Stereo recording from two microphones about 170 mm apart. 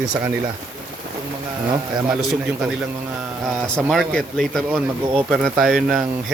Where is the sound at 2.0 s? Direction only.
5° right (ahead or behind).